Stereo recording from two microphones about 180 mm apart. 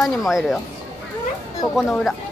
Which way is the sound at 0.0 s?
Centre (ahead or behind).